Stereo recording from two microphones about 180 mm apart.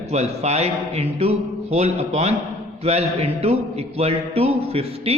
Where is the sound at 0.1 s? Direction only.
35° right (ahead or behind).